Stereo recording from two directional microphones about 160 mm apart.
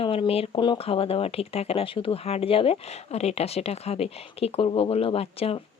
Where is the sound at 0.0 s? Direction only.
35° left (ahead or behind).